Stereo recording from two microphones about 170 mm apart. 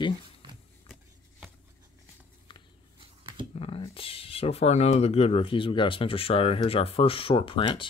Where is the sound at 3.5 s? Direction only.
35° left (ahead or behind).